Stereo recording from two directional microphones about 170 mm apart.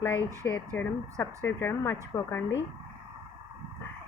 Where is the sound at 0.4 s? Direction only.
10° left (ahead or behind).